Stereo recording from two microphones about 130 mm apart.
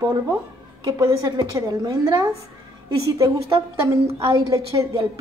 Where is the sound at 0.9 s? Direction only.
30° right (ahead or behind).